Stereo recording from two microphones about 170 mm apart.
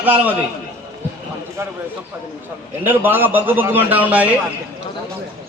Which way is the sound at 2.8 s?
10° right (ahead or behind).